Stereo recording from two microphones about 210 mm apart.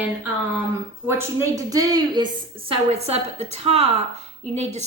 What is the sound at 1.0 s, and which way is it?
A woman's voice, 15° right (ahead or behind).